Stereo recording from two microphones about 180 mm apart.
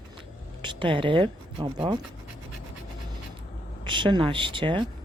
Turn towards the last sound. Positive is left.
turn(degrees=-30)  # may be behind; listen again after turning